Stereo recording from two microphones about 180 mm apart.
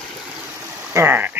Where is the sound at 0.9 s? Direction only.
15° right (ahead or behind).